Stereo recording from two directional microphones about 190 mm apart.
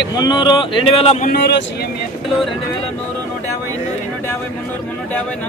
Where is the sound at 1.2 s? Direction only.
60° left (ahead or behind).